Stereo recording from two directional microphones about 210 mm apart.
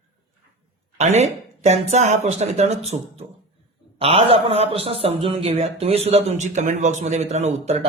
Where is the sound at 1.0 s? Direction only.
30° right (ahead or behind).